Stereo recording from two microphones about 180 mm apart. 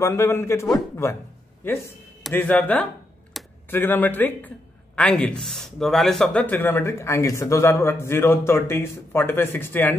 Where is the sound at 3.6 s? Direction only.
10° left (ahead or behind).